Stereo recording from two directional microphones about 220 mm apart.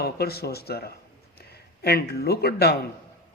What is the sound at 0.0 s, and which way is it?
Speech, 45° left (ahead or behind).